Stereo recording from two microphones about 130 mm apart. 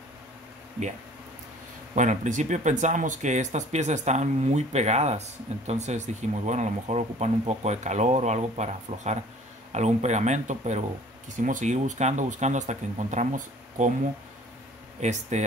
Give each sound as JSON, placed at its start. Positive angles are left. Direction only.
{"t": 2.0, "sound": "speech", "side_deg": -70}
{"t": 11.2, "sound": "speech", "side_deg": -80}
{"t": 15.0, "sound": "speech", "side_deg": -60}